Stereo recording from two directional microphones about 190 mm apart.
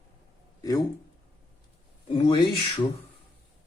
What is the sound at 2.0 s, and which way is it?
Speech, 30° left (ahead or behind).